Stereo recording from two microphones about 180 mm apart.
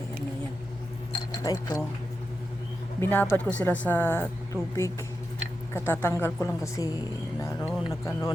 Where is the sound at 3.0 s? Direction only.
10° left (ahead or behind).